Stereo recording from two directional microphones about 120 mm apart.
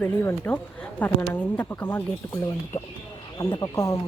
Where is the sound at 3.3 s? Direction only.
35° left (ahead or behind).